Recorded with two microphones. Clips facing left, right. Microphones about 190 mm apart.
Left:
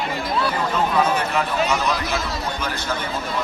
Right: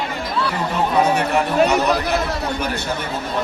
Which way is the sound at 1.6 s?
65° right (ahead or behind).